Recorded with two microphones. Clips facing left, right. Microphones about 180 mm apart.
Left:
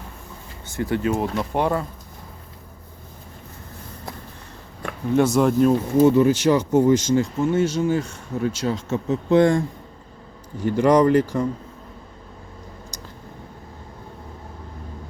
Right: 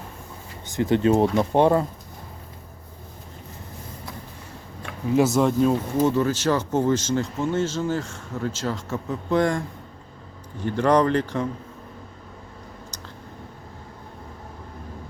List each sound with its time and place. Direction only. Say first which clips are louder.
0.7 s speech: right 3 dB; 20° right (ahead or behind)
5.1 s speech: left 2 dB; centre (ahead or behind)
6.1 s speech: left 5 dB; 15° left (ahead or behind)
10.6 s speech: left 3 dB; 10° left (ahead or behind)